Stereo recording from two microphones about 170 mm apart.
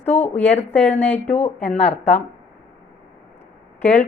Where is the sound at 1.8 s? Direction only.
40° left (ahead or behind).